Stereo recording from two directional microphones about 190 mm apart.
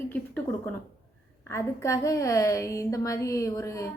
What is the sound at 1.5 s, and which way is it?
A woman's voice, 15° left (ahead or behind).